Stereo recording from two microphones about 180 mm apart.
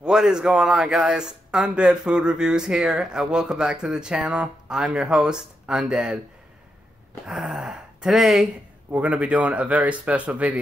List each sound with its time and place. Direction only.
0.0 s speech: 5° right (ahead or behind)
7.2 s speech: 5° right (ahead or behind)